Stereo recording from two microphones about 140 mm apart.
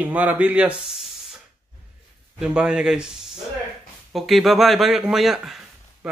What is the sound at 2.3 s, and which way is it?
Speech, 5° right (ahead or behind).